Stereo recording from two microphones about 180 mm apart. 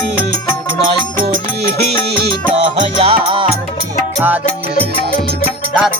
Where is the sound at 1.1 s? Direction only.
55° right (ahead or behind).